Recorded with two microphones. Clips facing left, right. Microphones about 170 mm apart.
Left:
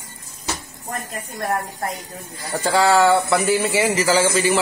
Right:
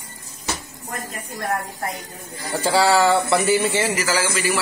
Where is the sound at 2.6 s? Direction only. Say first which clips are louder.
Left 1 dB; centre (ahead or behind).